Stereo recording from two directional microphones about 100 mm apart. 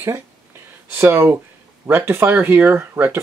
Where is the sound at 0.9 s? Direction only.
25° right (ahead or behind).